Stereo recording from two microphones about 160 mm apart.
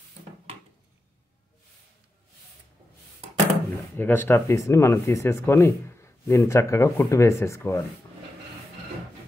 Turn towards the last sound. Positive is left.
turn(degrees=15)  # may be behind; listen again after turning